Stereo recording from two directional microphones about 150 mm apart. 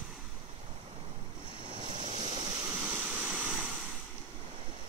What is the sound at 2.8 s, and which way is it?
Vehicle, 15° right (ahead or behind).